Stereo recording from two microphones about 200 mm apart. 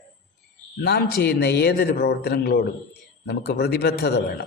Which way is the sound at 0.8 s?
55° left (ahead or behind).